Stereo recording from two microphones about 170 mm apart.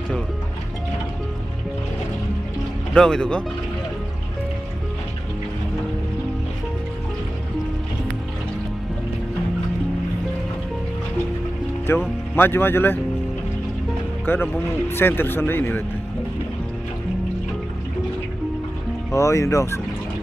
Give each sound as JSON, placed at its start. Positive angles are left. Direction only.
{"t": 2.9, "sound": "speech", "side_deg": 5}
{"t": 11.9, "sound": "speech", "side_deg": 15}
{"t": 14.2, "sound": "speech", "side_deg": 15}
{"t": 19.1, "sound": "speech", "side_deg": 15}